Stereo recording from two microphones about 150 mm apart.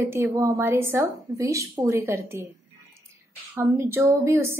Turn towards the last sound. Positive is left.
turn(degrees=-20)  # may be behind; listen again after turning